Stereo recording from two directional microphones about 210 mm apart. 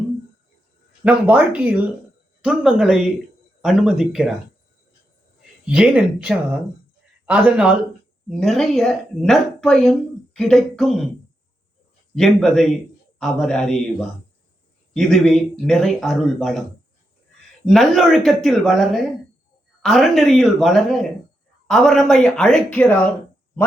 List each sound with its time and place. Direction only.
1.0 s speech: 5° right (ahead or behind)
5.6 s a woman's voice: 5° right (ahead or behind)
12.1 s speech: centre (ahead or behind)
14.9 s speech: centre (ahead or behind)
17.7 s speech: centre (ahead or behind)